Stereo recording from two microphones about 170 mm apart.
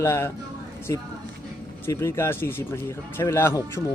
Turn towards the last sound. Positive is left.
turn(degrees=15)  # may be behind; listen again after turning